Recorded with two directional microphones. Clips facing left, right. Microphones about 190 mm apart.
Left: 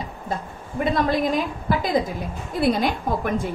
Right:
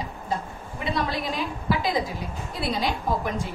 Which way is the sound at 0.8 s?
50° left (ahead or behind).